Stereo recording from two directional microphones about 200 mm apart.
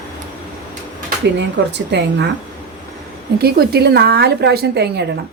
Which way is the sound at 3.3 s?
50° right (ahead or behind).